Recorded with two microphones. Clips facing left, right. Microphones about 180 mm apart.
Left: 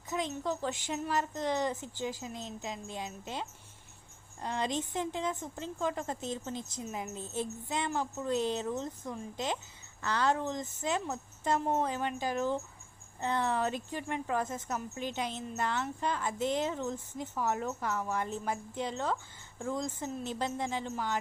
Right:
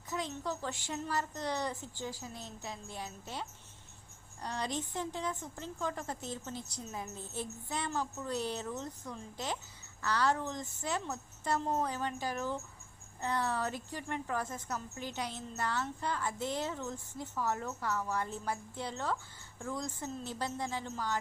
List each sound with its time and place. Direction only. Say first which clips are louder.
0.1 s a woman's voice: left 4 dB; 20° left (ahead or behind)
4.4 s a woman's voice: left 4 dB; 20° left (ahead or behind)